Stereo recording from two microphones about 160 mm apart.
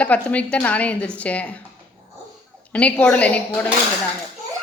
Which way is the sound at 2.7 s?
10° left (ahead or behind).